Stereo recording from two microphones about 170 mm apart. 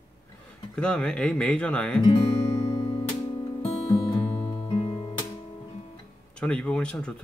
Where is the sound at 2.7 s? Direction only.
25° left (ahead or behind).